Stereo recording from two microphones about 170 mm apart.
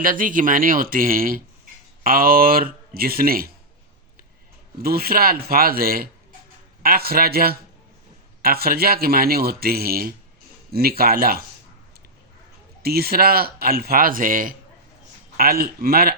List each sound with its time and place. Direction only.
0.0 s a man's voice: 55° right (ahead or behind)
4.8 s a man's voice: 65° right (ahead or behind)
12.8 s a man's voice: 65° right (ahead or behind)